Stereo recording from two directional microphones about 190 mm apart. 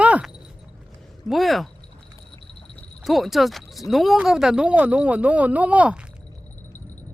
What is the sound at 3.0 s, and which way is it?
Speech, centre (ahead or behind).